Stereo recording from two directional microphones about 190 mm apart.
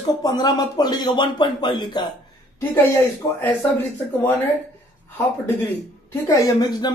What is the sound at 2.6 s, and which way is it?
Speech, 10° left (ahead or behind).